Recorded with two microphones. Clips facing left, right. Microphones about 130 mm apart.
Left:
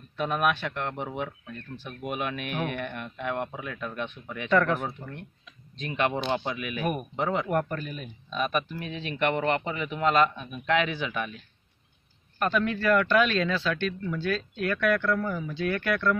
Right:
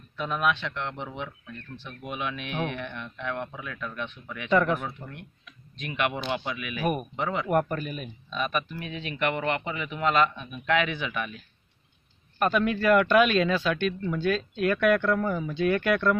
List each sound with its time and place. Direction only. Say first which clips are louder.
0.2 s speech: left 1 dB; 55° left (ahead or behind)
3.2 s speech: left 2 dB; 20° left (ahead or behind)
3.5 s speech: left 2 dB; 30° left (ahead or behind)
4.5 s speech: even; 15° right (ahead or behind)
4.7 s a man's voice: left 1 dB; 30° left (ahead or behind)
6.8 s a man's voice: right 2 dB; 5° right (ahead or behind)
8.4 s a man's voice: left 1 dB; 40° left (ahead or behind)
10.3 s a man's voice: left 1 dB; centre (ahead or behind)
10.7 s a man's voice: even; 35° left (ahead or behind)
12.4 s speech: right 2 dB; 10° right (ahead or behind)